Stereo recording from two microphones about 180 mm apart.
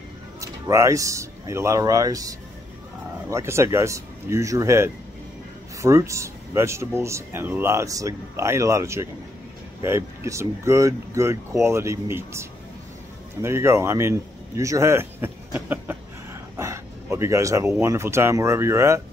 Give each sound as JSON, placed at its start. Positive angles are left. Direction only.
{"t": 0.4, "sound": "speech", "side_deg": -15}
{"t": 16.5, "sound": "a sound", "side_deg": -15}
{"t": 17.8, "sound": "speech", "side_deg": -15}